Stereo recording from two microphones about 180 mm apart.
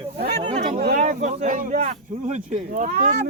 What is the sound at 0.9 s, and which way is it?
Speech, 40° right (ahead or behind).